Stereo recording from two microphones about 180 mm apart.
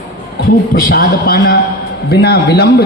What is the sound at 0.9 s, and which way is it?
A man's voice, 55° left (ahead or behind).